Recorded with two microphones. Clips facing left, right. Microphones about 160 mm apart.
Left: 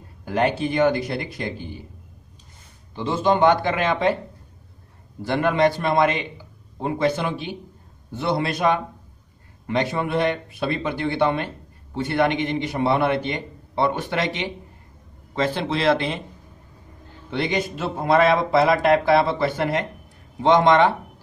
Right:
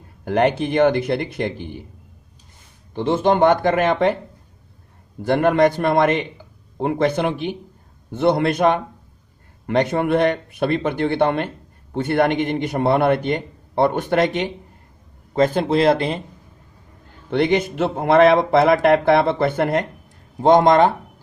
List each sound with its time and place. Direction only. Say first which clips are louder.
0.2 s speech: right 4 dB; 55° right (ahead or behind)
2.9 s speech: right 3 dB; 55° right (ahead or behind)
5.2 s speech: right 4 dB; 45° right (ahead or behind)
17.3 s speech: right 6 dB; 55° right (ahead or behind)